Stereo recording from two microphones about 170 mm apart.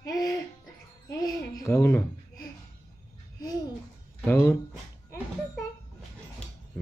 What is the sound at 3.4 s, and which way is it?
Babbling, 25° left (ahead or behind).